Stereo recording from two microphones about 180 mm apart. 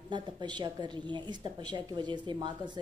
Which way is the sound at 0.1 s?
25° right (ahead or behind).